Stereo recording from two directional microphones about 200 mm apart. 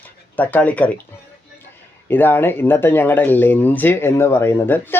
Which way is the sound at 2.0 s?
10° left (ahead or behind).